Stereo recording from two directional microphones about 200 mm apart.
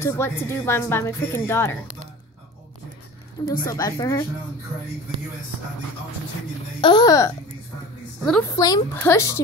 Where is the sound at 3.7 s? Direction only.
20° left (ahead or behind).